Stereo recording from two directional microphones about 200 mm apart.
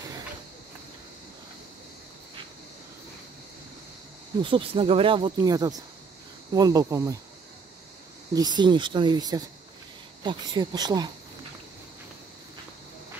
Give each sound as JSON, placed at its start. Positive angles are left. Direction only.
{"t": 4.4, "sound": "speech", "side_deg": -25}
{"t": 8.3, "sound": "speech", "side_deg": -20}